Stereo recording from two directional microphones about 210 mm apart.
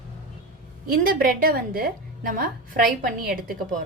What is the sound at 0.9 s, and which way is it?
A woman's voice, 45° right (ahead or behind).